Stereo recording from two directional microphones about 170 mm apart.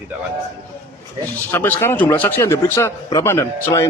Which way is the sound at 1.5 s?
15° left (ahead or behind).